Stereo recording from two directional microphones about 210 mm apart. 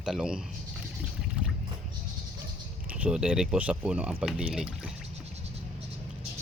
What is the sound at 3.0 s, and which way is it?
Speech, 5° right (ahead or behind).